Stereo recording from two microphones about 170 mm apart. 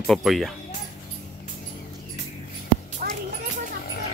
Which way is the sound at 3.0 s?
60° right (ahead or behind).